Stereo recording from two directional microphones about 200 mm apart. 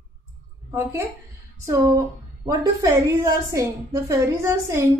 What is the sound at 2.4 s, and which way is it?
A woman's voice, 15° right (ahead or behind).